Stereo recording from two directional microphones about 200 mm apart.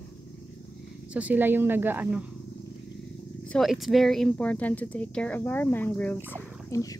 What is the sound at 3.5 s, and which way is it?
Speech, centre (ahead or behind).